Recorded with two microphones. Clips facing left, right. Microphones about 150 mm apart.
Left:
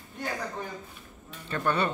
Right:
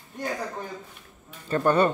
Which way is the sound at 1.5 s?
40° right (ahead or behind).